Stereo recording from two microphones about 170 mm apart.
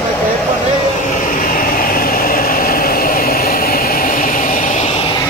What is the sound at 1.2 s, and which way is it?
Vehicle, 55° left (ahead or behind).